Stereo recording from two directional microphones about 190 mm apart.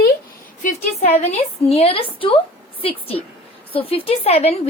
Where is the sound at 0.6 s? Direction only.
40° left (ahead or behind).